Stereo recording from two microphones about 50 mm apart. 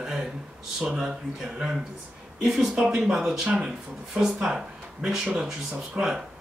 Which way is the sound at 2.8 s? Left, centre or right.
Centre.